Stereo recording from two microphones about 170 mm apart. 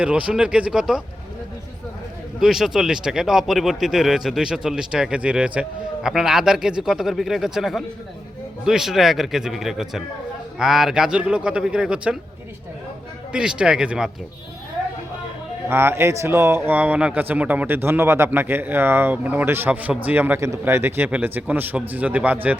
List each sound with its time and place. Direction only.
0.0 s speech: 5° right (ahead or behind)
2.4 s speech: centre (ahead or behind)
13.3 s speech: 5° right (ahead or behind)
15.7 s a man's voice: 15° right (ahead or behind)